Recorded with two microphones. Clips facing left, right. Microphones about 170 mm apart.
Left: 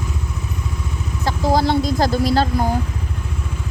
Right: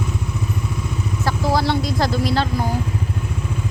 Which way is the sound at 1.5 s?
45° left (ahead or behind).